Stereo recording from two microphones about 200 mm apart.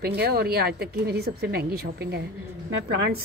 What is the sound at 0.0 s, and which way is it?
A woman's voice, 50° right (ahead or behind).